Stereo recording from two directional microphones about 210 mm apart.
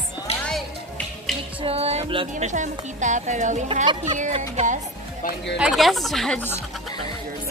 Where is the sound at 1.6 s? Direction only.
30° right (ahead or behind).